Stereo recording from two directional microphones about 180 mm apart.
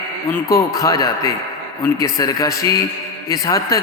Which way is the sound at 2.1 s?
20° left (ahead or behind).